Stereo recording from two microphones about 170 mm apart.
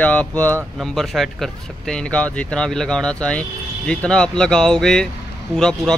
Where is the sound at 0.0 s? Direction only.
10° left (ahead or behind).